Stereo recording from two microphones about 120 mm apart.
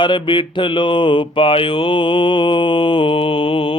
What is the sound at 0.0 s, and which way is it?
Mantra, 40° left (ahead or behind).